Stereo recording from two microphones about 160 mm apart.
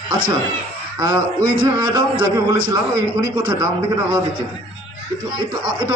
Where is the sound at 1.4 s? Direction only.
30° right (ahead or behind).